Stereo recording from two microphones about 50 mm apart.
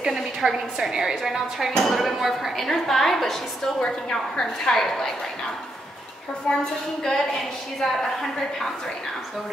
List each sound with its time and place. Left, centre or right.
0.0 s a woman's voice: centre
1.8 s a woman's voice: centre
6.5 s a woman's voice: centre